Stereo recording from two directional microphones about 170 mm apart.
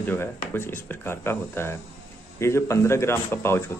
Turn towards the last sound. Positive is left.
turn(degrees=15)  # may be behind; listen again after turning